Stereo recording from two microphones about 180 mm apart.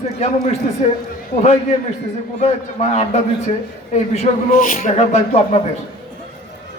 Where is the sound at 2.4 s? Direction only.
40° left (ahead or behind).